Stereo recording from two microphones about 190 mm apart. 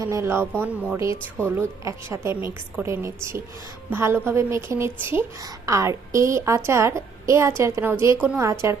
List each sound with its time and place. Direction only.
0.0 s a woman's voice: 15° right (ahead or behind)